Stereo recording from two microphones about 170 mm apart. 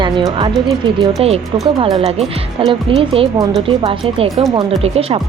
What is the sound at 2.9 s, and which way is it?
Speech, 30° right (ahead or behind).